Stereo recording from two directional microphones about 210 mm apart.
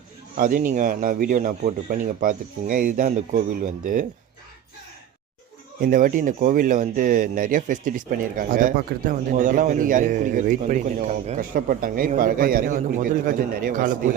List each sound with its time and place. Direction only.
0.3 s speech: 40° right (ahead or behind)
5.8 s speech: 40° right (ahead or behind)